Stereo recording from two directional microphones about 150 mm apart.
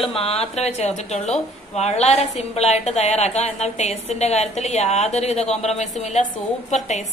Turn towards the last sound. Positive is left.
turn(degrees=50)  # may be behind; listen again after turning